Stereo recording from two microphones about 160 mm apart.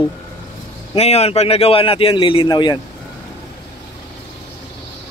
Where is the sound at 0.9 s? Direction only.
40° left (ahead or behind).